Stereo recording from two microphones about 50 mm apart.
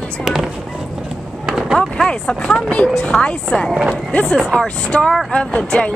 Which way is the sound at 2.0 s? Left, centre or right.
Centre.